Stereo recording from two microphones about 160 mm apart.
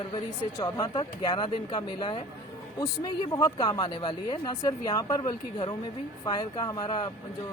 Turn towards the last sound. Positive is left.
turn(degrees=30)  # may be behind; listen again after turning